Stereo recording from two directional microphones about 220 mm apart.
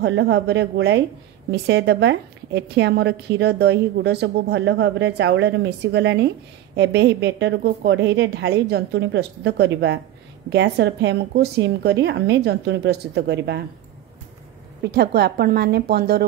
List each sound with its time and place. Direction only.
0.0 s a woman's voice: 50° right (ahead or behind)
14.8 s a woman's voice: 45° right (ahead or behind)